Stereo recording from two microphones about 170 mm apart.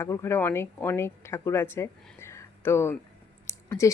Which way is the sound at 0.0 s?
15° left (ahead or behind).